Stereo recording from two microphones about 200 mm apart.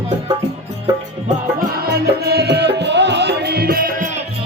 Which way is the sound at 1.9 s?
55° right (ahead or behind).